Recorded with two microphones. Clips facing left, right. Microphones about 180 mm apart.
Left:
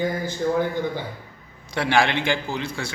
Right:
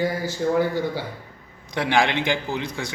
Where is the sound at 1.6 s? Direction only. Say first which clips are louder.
Even; 15° right (ahead or behind).